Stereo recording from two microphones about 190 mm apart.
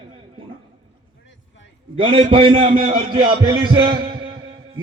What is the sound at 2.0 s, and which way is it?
A man's voice, 25° right (ahead or behind).